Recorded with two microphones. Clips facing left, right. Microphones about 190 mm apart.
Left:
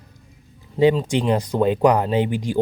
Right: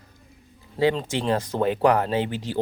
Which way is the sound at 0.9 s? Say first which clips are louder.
Left 4 dB; 15° left (ahead or behind).